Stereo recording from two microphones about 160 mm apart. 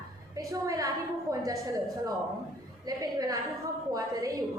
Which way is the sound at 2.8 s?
25° right (ahead or behind).